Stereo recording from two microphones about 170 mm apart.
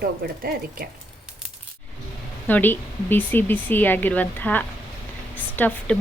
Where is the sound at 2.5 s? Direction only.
10° left (ahead or behind).